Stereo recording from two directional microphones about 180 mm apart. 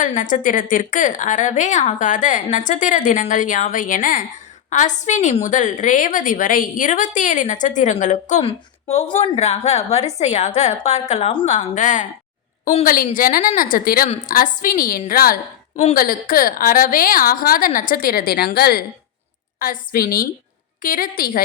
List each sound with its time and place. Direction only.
0.0 s a woman's voice: 45° left (ahead or behind)